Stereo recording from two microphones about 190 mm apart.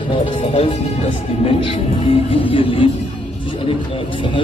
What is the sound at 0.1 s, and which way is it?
Music, 25° left (ahead or behind).